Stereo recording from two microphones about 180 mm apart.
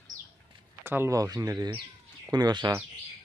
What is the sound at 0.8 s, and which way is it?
Speech, 15° right (ahead or behind).